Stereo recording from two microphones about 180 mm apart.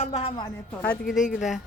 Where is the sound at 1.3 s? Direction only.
Centre (ahead or behind).